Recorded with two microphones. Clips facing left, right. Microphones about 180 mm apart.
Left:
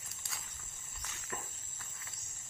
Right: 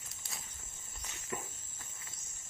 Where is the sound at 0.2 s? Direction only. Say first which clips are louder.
Right 1 dB; 20° right (ahead or behind).